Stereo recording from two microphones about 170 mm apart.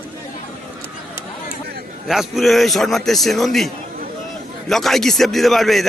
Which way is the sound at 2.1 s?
Centre (ahead or behind).